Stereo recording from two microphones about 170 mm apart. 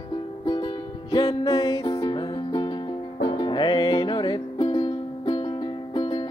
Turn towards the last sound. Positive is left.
turn(degrees=25)  # may be behind; listen again after turning